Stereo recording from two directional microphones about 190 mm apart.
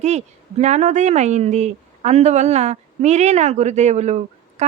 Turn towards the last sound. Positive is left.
turn(degrees=-35)  # may be behind; listen again after turning